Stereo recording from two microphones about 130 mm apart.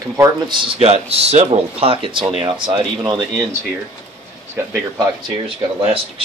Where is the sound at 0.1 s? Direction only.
30° right (ahead or behind).